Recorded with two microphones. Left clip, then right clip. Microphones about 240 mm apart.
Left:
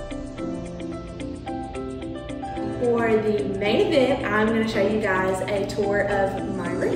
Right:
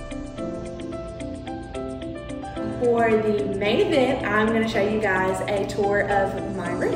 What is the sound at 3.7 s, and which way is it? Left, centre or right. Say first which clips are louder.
A woman's voice: left 1 dB; centre.